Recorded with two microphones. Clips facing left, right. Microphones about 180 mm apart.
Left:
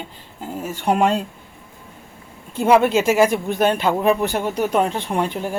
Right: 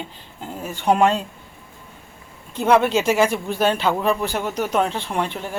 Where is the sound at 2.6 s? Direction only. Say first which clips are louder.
Left 2 dB; 5° left (ahead or behind).